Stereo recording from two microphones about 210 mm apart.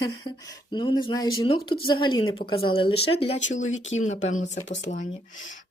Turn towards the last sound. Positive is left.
turn(degrees=35)  # may be behind; listen again after turning